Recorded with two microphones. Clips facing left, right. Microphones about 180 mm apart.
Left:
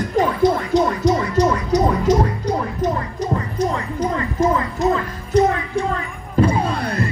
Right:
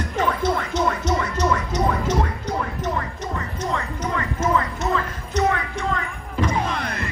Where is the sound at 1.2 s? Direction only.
35° left (ahead or behind).